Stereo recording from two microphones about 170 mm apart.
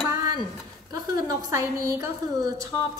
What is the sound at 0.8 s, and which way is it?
A woman's voice, 25° right (ahead or behind).